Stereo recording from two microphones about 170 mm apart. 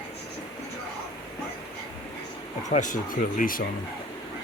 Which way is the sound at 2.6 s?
45° left (ahead or behind).